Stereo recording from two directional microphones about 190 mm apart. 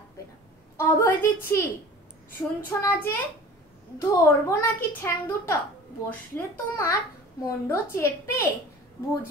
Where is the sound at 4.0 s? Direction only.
15° left (ahead or behind).